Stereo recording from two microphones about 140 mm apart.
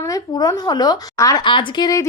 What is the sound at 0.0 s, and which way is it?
A woman's voice, 25° left (ahead or behind).